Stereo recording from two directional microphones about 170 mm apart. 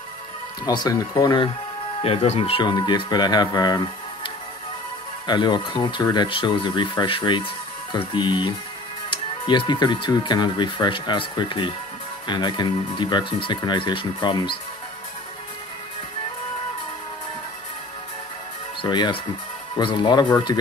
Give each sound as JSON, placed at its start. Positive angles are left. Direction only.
{"t": 0.7, "sound": "speech", "side_deg": 20}
{"t": 2.0, "sound": "speech", "side_deg": 35}
{"t": 18.8, "sound": "speech", "side_deg": 25}